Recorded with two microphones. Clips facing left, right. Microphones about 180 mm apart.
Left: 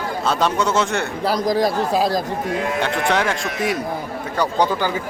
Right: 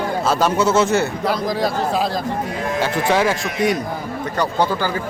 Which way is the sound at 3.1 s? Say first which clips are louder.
Right 2 dB; 5° right (ahead or behind).